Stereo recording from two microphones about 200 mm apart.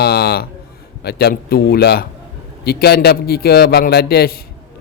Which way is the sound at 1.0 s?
50° left (ahead or behind).